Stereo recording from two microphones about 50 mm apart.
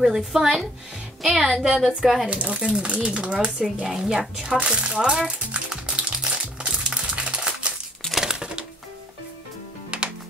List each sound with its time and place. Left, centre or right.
0.0 s a woman's voice: centre
1.2 s music: centre
2.2 s a woman's voice: right
5.5 s music: right
8.1 s a sound: centre
9.9 s music: right